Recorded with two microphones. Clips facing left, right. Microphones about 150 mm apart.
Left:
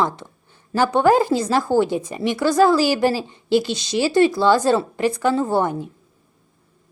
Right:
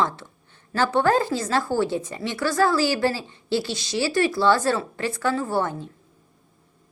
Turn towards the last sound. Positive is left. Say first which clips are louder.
# left 5 dB
turn(degrees=15)  # may be behind; listen again after turning